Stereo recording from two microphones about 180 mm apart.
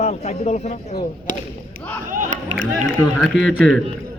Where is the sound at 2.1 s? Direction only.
45° right (ahead or behind).